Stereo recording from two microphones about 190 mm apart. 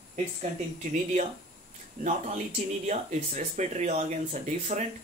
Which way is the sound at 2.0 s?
40° right (ahead or behind).